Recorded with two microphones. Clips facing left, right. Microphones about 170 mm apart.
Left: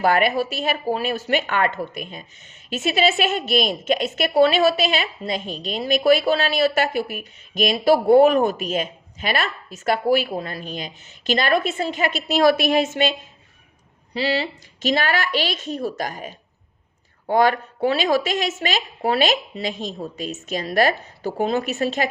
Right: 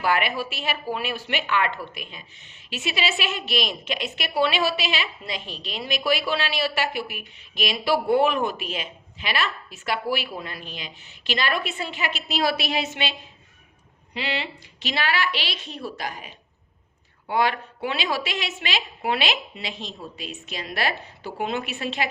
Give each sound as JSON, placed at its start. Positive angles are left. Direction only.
{"t": 0.0, "sound": "a woman's voice", "side_deg": 45}
{"t": 14.1, "sound": "a woman's voice", "side_deg": 35}